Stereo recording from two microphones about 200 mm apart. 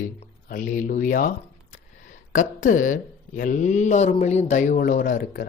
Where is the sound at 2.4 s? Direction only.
40° left (ahead or behind).